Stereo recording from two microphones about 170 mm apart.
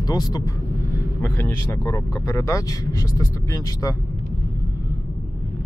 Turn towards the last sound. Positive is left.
turn(degrees=20)  # may be behind; listen again after turning